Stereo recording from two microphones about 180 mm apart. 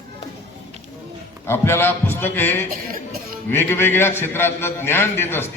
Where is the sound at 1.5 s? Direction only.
15° left (ahead or behind).